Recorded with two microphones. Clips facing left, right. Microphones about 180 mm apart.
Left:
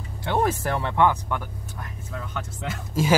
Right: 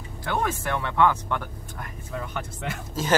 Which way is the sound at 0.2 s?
30° left (ahead or behind).